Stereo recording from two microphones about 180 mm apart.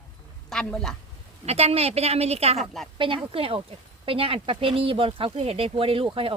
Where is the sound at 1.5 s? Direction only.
35° right (ahead or behind).